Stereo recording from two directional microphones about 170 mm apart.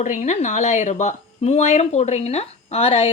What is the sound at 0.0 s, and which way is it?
Speech, 45° left (ahead or behind).